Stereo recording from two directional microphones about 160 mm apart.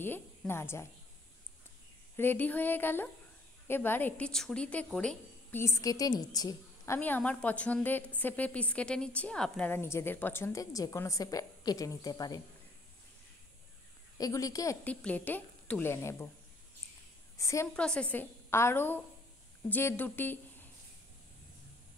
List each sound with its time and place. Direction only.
0.0 s a woman's voice: 15° left (ahead or behind)
2.1 s a woman's voice: 10° left (ahead or behind)
5.6 s a woman's voice: 20° left (ahead or behind)
7.0 s a woman's voice: 10° left (ahead or behind)
14.1 s a woman's voice: 20° left (ahead or behind)
14.9 s a woman's voice: 10° left (ahead or behind)
17.4 s a woman's voice: 20° left (ahead or behind)
17.7 s a woman's voice: 5° left (ahead or behind)